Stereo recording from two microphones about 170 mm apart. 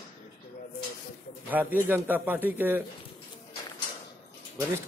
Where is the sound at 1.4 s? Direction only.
10° right (ahead or behind).